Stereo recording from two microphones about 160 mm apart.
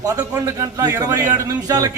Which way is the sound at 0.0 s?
20° right (ahead or behind).